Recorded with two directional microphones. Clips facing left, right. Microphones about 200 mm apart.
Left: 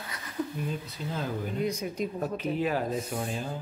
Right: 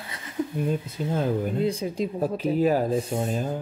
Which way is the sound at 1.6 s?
30° right (ahead or behind).